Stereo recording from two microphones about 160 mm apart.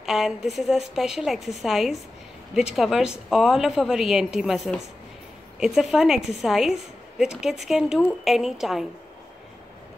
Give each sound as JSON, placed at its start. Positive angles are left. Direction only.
{"t": 0.0, "sound": "a woman's voice", "side_deg": 0}